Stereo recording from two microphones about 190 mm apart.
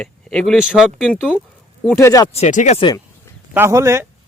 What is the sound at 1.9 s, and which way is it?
Speech, 15° left (ahead or behind).